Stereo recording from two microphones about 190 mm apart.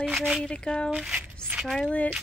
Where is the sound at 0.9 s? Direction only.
5° right (ahead or behind).